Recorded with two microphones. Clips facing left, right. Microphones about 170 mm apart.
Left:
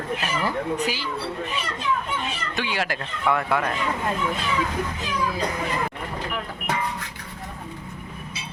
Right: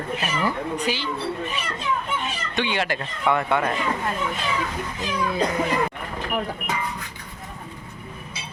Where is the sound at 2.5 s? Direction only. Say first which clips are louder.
Right 3 dB; 5° left (ahead or behind).